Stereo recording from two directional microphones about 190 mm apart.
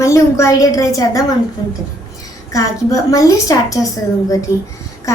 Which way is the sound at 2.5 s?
20° left (ahead or behind).